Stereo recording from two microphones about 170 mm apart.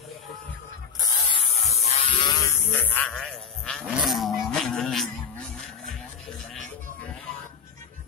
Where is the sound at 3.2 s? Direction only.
5° left (ahead or behind).